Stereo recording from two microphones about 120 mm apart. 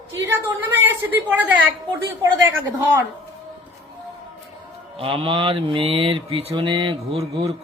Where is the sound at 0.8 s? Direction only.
15° right (ahead or behind).